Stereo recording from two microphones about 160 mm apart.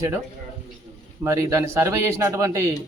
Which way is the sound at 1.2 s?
15° right (ahead or behind).